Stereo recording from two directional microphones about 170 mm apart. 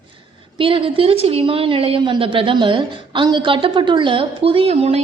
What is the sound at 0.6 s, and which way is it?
A woman's voice, 30° right (ahead or behind).